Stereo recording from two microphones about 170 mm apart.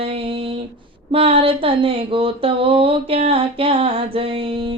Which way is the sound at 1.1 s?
35° right (ahead or behind).